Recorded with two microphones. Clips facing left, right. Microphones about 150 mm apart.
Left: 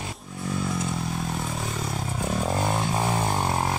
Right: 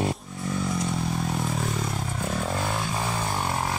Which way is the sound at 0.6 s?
Centre (ahead or behind).